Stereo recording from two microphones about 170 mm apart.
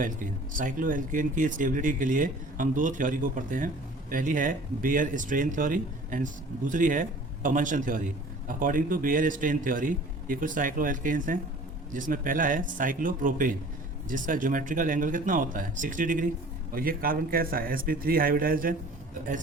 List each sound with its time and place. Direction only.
0.0 s a man's voice: 50° right (ahead or behind)